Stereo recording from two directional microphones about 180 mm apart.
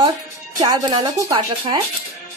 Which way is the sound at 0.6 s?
25° right (ahead or behind).